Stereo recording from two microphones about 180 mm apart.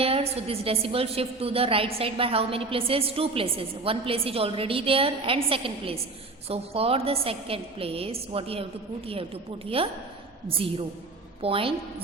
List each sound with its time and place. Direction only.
0.0 s a woman's voice: 35° right (ahead or behind)